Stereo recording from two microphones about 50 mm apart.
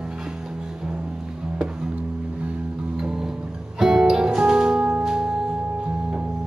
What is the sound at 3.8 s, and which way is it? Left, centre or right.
Music, centre.